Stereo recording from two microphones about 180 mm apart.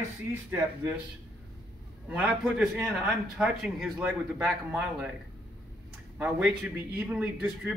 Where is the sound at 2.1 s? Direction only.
5° right (ahead or behind).